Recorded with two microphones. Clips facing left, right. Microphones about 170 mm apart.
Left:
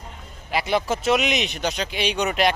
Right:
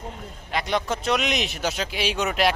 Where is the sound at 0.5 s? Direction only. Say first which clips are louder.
Left 3 dB; 5° left (ahead or behind).